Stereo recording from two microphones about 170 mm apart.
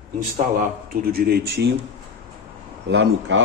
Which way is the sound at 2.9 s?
90° right.